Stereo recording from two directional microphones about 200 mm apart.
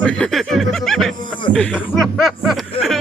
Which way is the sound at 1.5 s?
5° left (ahead or behind).